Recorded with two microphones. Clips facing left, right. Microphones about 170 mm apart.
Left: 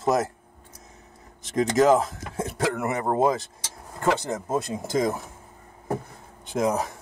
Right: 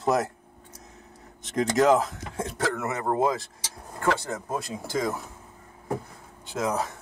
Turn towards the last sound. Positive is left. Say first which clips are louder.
# left 3 dB
turn(degrees=15)  # may be behind; listen again after turning